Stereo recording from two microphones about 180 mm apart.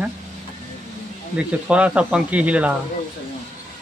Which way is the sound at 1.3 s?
5° right (ahead or behind).